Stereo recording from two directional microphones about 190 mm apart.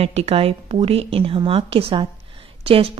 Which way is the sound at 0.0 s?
35° right (ahead or behind).